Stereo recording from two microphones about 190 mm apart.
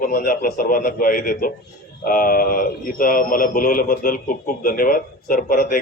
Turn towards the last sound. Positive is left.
turn(degrees=45)  # may be behind; listen again after turning